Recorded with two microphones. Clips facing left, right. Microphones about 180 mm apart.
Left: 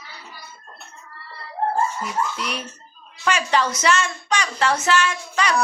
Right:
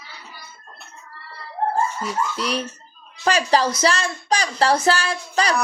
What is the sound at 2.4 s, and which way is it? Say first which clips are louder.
Speech: right 5 dB; 35° right (ahead or behind).